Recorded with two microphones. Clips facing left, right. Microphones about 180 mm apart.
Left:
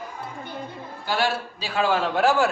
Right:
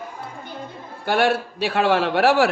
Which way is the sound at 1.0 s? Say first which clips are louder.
Right 6 dB; 60° right (ahead or behind).